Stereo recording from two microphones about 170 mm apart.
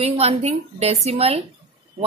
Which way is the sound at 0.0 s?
35° right (ahead or behind).